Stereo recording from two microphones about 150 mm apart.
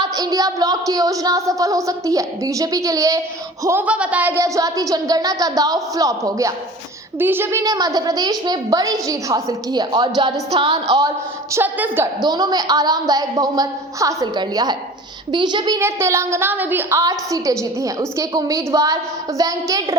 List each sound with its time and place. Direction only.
0.0 s a child's voice: 25° right (ahead or behind)
11.5 s a woman's voice: 15° right (ahead or behind)
12.2 s a child's voice: 25° right (ahead or behind)
15.8 s a child's voice: 20° right (ahead or behind)